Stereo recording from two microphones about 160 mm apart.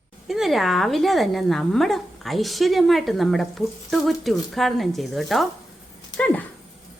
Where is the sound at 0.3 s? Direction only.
Centre (ahead or behind).